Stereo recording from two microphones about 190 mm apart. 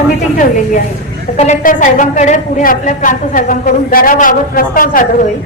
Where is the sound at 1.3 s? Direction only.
40° left (ahead or behind).